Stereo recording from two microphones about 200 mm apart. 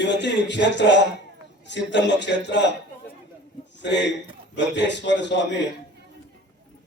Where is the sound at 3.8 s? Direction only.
60° left (ahead or behind).